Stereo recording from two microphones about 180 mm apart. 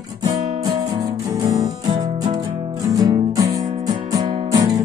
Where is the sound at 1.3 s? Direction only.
20° right (ahead or behind).